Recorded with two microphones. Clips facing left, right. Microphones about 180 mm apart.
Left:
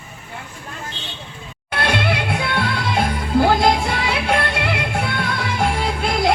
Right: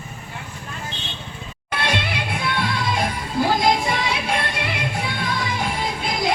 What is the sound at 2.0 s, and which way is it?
Music, 65° left (ahead or behind).